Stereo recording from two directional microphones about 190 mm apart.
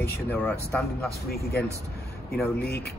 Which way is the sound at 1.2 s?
55° left (ahead or behind).